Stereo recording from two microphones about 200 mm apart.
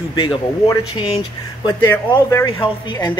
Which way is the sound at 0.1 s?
25° left (ahead or behind).